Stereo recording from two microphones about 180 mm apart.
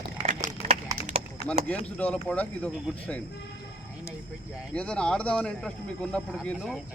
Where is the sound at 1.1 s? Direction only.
35° right (ahead or behind).